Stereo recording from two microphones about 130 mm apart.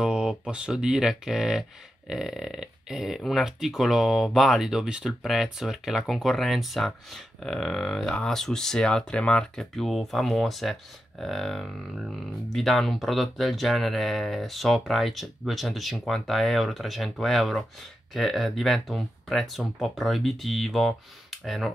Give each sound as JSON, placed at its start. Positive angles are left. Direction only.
{"t": 0.0, "sound": "speech", "side_deg": -5}